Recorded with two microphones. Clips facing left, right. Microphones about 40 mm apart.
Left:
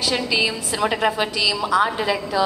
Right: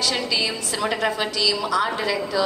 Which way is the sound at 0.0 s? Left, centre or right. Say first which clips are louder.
Left 3 dB; centre.